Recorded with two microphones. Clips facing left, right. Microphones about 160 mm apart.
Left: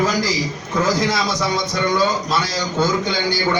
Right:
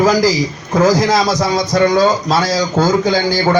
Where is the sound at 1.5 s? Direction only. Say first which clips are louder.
Right 8 dB; 40° right (ahead or behind).